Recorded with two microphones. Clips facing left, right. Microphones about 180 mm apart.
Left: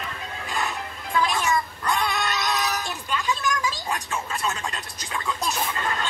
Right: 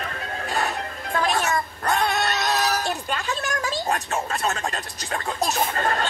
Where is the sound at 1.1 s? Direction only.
45° right (ahead or behind); by 4.0 s 65° right (ahead or behind).